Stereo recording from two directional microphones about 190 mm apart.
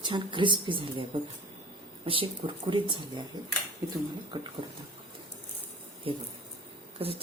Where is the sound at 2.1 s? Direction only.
25° right (ahead or behind).